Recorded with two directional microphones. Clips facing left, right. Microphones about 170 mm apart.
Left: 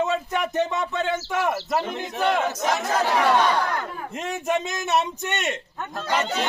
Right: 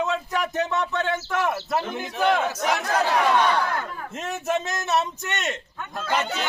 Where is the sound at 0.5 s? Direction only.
Centre (ahead or behind); by 4.2 s 15° left (ahead or behind).